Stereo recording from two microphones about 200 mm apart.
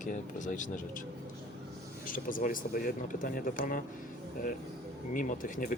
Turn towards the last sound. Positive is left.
turn(degrees=40)  # may be behind; listen again after turning